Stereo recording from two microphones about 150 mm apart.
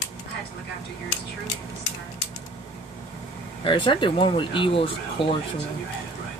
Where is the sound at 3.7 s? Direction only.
35° left (ahead or behind).